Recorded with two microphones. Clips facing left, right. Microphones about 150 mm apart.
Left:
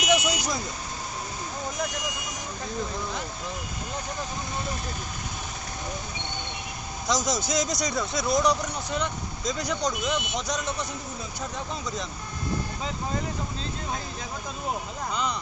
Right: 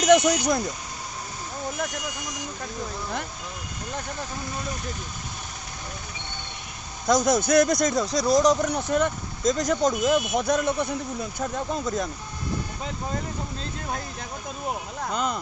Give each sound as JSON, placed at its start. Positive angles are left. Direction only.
{"t": 0.1, "sound": "speech", "side_deg": -55}
{"t": 7.1, "sound": "speech", "side_deg": -55}
{"t": 8.0, "sound": "speech", "side_deg": 0}
{"t": 8.4, "sound": "speech", "side_deg": -55}
{"t": 15.1, "sound": "speech", "side_deg": -50}